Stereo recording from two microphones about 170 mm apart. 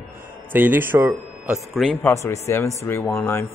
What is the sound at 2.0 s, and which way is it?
A man's voice, 15° left (ahead or behind).